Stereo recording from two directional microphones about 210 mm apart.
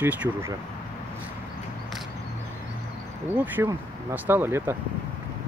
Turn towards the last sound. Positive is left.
turn(degrees=-10)  # may be behind; listen again after turning